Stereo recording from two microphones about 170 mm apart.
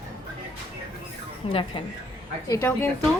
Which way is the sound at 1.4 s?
35° left (ahead or behind).